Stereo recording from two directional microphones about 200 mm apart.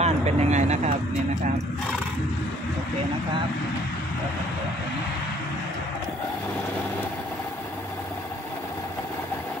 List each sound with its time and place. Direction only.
0.0 s speech: 35° right (ahead or behind)